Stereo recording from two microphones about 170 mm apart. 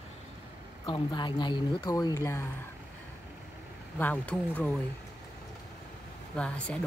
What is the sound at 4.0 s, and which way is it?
Speech, 10° left (ahead or behind).